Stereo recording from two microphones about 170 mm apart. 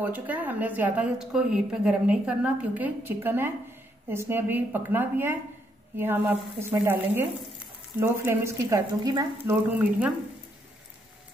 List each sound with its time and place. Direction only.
0.0 s a woman's voice: 10° right (ahead or behind)
9.7 s a woman's voice: 10° right (ahead or behind)